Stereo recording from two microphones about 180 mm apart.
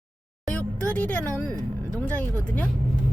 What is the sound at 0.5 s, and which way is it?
Music, 10° left (ahead or behind).